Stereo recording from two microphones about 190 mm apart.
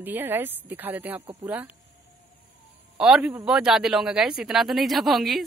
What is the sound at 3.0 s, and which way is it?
A man's voice, 5° right (ahead or behind).